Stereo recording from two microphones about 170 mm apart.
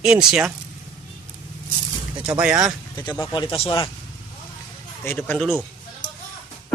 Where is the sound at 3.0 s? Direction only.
25° left (ahead or behind).